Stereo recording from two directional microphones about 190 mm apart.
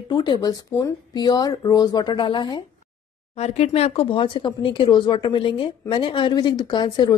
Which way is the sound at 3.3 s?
35° left (ahead or behind).